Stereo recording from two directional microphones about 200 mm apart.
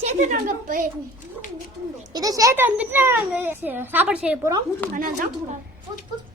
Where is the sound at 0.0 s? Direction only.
40° right (ahead or behind).